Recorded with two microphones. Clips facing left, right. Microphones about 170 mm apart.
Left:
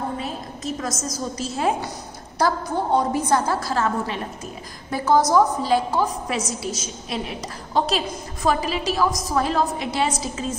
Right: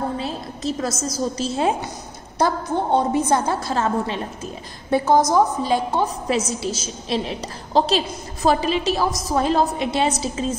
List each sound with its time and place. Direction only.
0.2 s a woman's voice: 30° right (ahead or behind)